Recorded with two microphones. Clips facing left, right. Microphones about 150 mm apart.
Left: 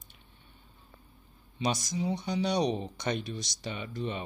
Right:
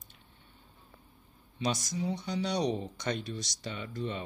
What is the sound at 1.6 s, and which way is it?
Speech, 20° left (ahead or behind).